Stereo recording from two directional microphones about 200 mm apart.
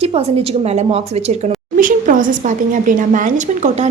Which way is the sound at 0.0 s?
30° right (ahead or behind).